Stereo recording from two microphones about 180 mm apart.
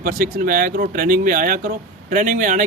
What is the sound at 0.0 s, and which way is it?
Speech, 50° right (ahead or behind).